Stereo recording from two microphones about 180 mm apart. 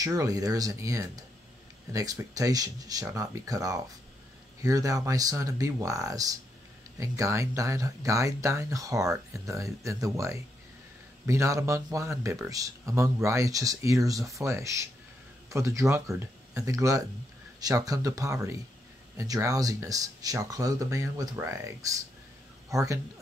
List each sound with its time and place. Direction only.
0.0 s speech: 20° right (ahead or behind)